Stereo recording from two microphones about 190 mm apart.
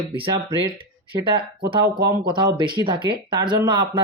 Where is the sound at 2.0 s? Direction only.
20° right (ahead or behind).